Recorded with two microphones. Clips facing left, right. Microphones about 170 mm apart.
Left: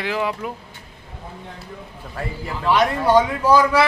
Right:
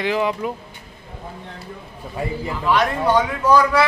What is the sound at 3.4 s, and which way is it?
Speech, 25° left (ahead or behind).